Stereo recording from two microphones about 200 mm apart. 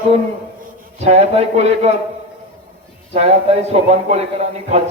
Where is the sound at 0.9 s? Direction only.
35° right (ahead or behind).